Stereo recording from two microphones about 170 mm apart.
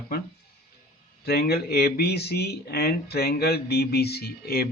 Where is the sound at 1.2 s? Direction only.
70° left (ahead or behind).